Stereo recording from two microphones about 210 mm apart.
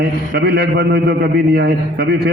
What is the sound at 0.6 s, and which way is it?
Speech, 50° right (ahead or behind).